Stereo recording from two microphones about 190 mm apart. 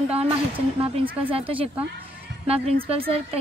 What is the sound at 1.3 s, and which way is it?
A woman's voice, 30° right (ahead or behind).